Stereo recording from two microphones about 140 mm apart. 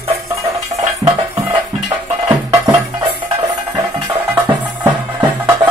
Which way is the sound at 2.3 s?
15° right (ahead or behind).